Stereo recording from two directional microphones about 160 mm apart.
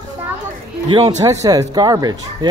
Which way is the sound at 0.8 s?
25° right (ahead or behind).